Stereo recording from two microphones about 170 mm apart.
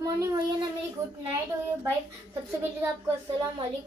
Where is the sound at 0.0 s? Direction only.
25° right (ahead or behind).